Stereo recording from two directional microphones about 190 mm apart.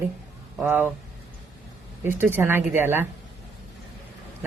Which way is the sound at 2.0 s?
10° right (ahead or behind).